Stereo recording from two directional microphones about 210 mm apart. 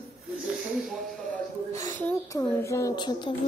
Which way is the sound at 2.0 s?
15° left (ahead or behind).